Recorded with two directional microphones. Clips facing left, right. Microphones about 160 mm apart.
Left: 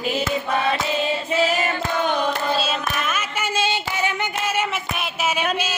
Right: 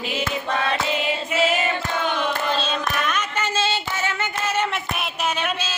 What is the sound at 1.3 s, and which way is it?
Female singing, 35° left (ahead or behind).